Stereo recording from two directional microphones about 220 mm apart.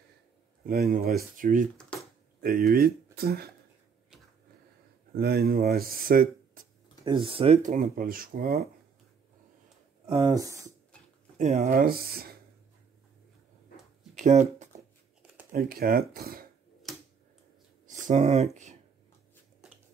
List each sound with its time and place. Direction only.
0.7 s speech: 40° right (ahead or behind)
1.9 s a sound: 5° left (ahead or behind)
2.4 s speech: 40° right (ahead or behind)
5.1 s speech: 45° right (ahead or behind)
7.1 s speech: 25° right (ahead or behind); by 8.6 s 45° right (ahead or behind)
10.0 s speech: 20° right (ahead or behind)
11.3 s speech: 30° right (ahead or behind)
14.1 s a sound: 35° right (ahead or behind)
15.5 s speech: 40° right (ahead or behind)
17.8 s speech: 35° right (ahead or behind)